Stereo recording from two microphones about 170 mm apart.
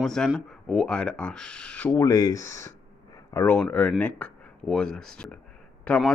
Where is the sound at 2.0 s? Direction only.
20° left (ahead or behind).